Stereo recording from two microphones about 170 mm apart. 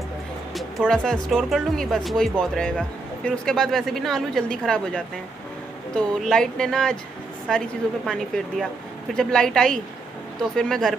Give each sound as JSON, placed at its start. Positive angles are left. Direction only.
{"t": 0.6, "sound": "speech", "side_deg": 0}
{"t": 9.1, "sound": "speech", "side_deg": 5}